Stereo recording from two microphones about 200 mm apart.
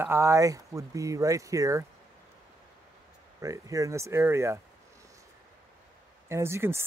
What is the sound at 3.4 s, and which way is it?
Speech, 15° right (ahead or behind).